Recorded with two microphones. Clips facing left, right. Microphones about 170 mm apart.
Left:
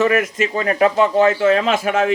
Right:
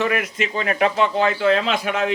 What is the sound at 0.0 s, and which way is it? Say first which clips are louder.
A man's voice: left 5 dB; 45° left (ahead or behind).